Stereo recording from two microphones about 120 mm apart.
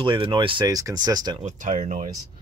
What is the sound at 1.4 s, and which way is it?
Speech, 80° right.